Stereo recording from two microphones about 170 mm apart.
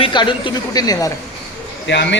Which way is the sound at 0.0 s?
25° left (ahead or behind).